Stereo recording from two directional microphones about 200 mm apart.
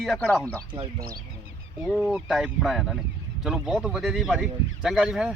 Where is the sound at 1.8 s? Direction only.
Centre (ahead or behind).